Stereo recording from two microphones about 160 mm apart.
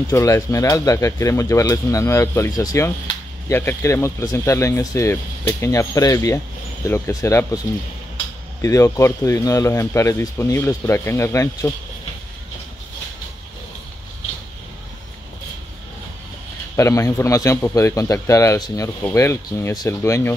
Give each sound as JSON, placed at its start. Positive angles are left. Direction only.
{"t": 0.1, "sound": "speech", "side_deg": 20}
{"t": 16.7, "sound": "speech", "side_deg": 20}